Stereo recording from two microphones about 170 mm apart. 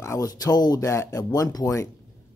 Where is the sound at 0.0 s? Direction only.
20° left (ahead or behind).